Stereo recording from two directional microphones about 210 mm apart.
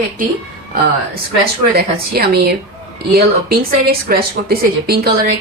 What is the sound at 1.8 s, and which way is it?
Speech, 50° right (ahead or behind).